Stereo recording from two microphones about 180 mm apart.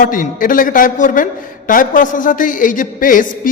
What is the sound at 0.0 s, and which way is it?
A man's voice, 50° left (ahead or behind).